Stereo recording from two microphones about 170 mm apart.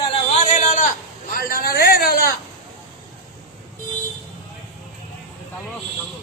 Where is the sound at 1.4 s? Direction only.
60° left (ahead or behind).